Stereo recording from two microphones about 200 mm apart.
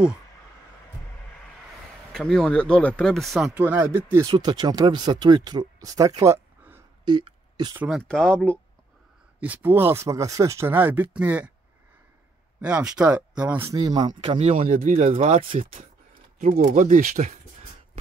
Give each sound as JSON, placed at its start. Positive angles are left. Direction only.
{"t": 2.1, "sound": "speech", "side_deg": 0}
{"t": 7.1, "sound": "speech", "side_deg": -20}
{"t": 7.8, "sound": "speech", "side_deg": 0}
{"t": 9.4, "sound": "speech", "side_deg": -10}
{"t": 12.5, "sound": "speech", "side_deg": -10}
{"t": 13.7, "sound": "speech", "side_deg": -20}
{"t": 15.6, "sound": "speech", "side_deg": -45}